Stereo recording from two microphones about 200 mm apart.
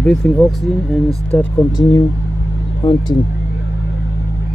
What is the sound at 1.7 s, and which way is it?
Speech, 15° left (ahead or behind).